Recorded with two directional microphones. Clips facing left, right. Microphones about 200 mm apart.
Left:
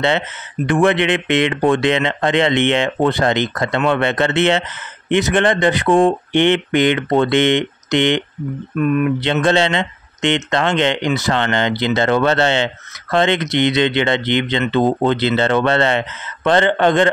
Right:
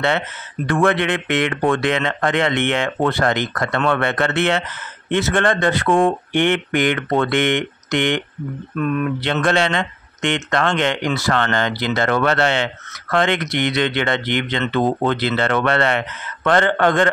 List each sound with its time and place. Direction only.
0.7 s speech: 20° left (ahead or behind)
8.7 s speech: 10° left (ahead or behind)
9.2 s speech: 25° left (ahead or behind)